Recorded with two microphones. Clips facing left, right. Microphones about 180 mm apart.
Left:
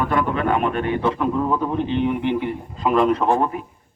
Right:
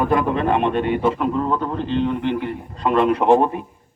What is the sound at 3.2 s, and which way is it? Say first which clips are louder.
Speech: right 4 dB; 20° right (ahead or behind).